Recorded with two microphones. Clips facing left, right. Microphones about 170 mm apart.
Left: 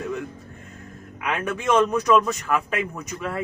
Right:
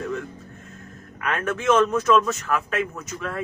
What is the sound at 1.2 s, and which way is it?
A man's voice, 15° left (ahead or behind).